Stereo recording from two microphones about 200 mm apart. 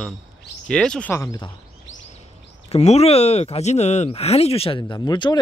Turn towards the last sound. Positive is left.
turn(degrees=20)  # may be behind; listen again after turning